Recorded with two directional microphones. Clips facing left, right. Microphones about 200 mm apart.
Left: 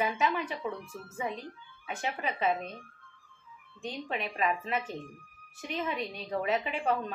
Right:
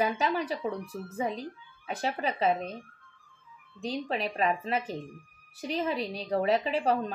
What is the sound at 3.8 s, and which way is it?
A woman's voice, 35° right (ahead or behind).